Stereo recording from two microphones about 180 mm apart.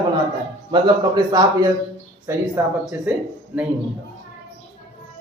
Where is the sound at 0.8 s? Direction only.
20° right (ahead or behind).